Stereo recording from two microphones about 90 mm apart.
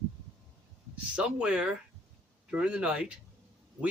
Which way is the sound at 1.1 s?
10° right (ahead or behind).